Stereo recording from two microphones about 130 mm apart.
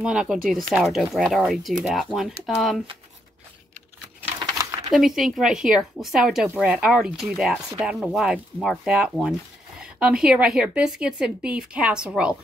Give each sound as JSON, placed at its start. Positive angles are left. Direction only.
{"t": 0.0, "sound": "speech", "side_deg": -5}
{"t": 4.4, "sound": "a sound", "side_deg": -25}
{"t": 4.9, "sound": "a woman's voice", "side_deg": 0}